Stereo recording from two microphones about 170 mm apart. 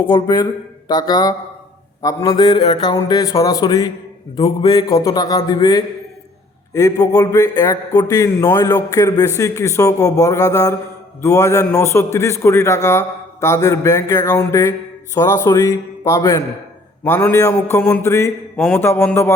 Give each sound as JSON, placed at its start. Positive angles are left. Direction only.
{"t": 0.0, "sound": "a man's voice", "side_deg": 25}
{"t": 7.0, "sound": "a man's voice", "side_deg": 20}